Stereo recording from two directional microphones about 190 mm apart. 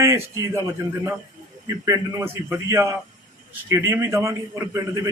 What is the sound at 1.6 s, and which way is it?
A man's voice, 15° right (ahead or behind).